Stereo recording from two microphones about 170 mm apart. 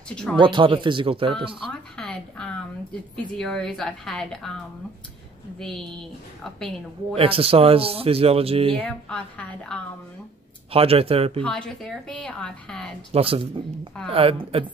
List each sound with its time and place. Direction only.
0.1 s a woman's voice: 5° left (ahead or behind)
0.4 s speech: 30° right (ahead or behind)
1.7 s a sound: 5° left (ahead or behind)
3.3 s a woman's voice: 5° left (ahead or behind)
5.6 s a woman's voice: 5° left (ahead or behind)
7.2 s speech: 35° right (ahead or behind)
8.7 s a woman's voice: 5° left (ahead or behind)
10.7 s speech: 35° right (ahead or behind)
11.4 s a woman's voice: 5° left (ahead or behind)
13.1 s speech: 35° right (ahead or behind)